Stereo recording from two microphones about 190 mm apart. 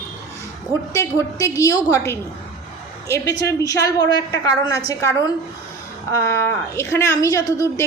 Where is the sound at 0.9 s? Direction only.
15° left (ahead or behind).